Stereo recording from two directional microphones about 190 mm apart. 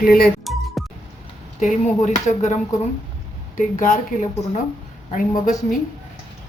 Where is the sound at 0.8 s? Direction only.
Centre (ahead or behind).